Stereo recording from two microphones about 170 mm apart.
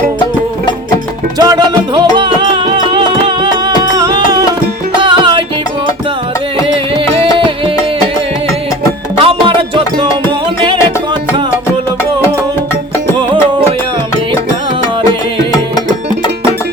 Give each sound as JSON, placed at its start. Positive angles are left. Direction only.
{"t": 1.4, "sound": "music", "side_deg": -25}
{"t": 9.2, "sound": "music", "side_deg": -30}